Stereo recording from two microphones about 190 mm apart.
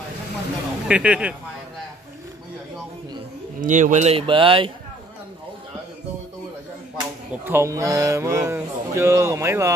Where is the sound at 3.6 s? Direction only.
40° right (ahead or behind); by 4.7 s 25° right (ahead or behind).